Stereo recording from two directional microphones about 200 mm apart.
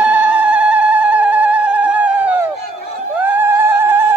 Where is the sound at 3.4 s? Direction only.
10° right (ahead or behind).